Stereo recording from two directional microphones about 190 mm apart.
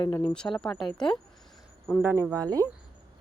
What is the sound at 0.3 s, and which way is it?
Speech, 5° left (ahead or behind).